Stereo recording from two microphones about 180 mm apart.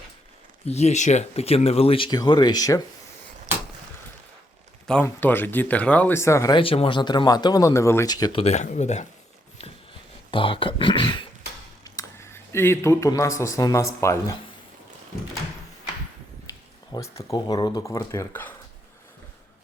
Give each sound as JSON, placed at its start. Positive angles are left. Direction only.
{"t": 0.6, "sound": "speech", "side_deg": 35}
{"t": 5.0, "sound": "speech", "side_deg": 10}
{"t": 6.6, "sound": "speech", "side_deg": 30}
{"t": 10.3, "sound": "speech", "side_deg": 30}
{"t": 11.8, "sound": "speech", "side_deg": 15}
{"t": 16.9, "sound": "speech", "side_deg": 15}